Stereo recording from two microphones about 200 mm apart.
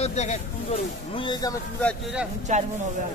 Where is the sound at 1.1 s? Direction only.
20° left (ahead or behind).